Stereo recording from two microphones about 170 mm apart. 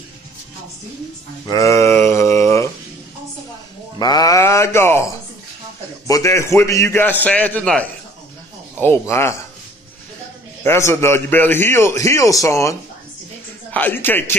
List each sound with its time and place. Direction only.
1.5 s a sound: 15° left (ahead or behind)
4.0 s speech: 20° left (ahead or behind)
6.0 s a man's voice: 20° left (ahead or behind)
10.6 s a man's voice: 15° left (ahead or behind)